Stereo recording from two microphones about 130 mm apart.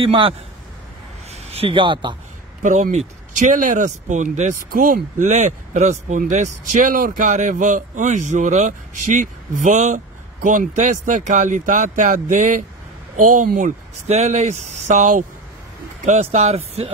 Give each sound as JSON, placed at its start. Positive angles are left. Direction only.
{"t": 0.0, "sound": "a man's voice", "side_deg": -45}
{"t": 2.6, "sound": "speech", "side_deg": -65}
{"t": 16.1, "sound": "speech", "side_deg": -60}